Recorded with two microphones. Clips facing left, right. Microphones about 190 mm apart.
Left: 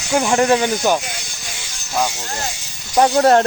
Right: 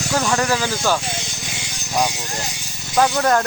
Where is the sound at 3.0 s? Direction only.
30° left (ahead or behind).